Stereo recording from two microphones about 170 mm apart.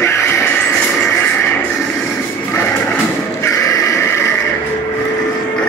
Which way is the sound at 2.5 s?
15° left (ahead or behind).